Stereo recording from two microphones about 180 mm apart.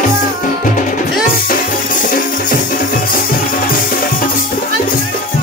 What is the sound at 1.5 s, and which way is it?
Music, 50° left (ahead or behind).